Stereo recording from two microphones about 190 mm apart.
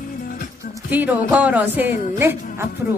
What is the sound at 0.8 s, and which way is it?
Music, 10° right (ahead or behind).